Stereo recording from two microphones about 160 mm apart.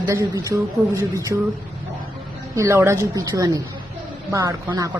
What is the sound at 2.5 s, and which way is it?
A woman's voice, 15° right (ahead or behind).